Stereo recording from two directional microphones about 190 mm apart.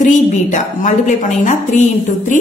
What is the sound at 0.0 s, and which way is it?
A woman's voice, 40° left (ahead or behind).